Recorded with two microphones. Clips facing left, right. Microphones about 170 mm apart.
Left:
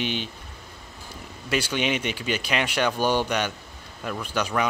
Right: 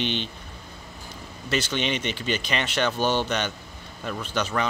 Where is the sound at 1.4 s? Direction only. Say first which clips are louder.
Left 1 dB; 10° left (ahead or behind).